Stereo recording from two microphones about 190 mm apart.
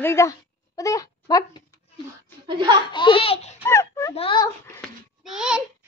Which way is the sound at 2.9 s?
25° left (ahead or behind).